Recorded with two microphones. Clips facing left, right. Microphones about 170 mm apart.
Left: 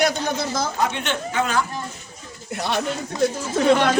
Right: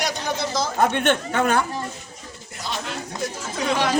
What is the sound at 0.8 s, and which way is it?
Speech, 55° right (ahead or behind).